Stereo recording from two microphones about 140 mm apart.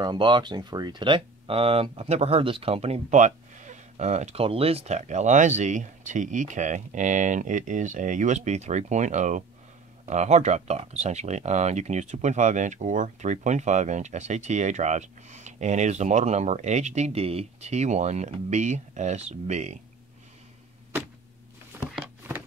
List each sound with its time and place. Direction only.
0.0 s speech: 35° right (ahead or behind); by 19.8 s 55° right (ahead or behind)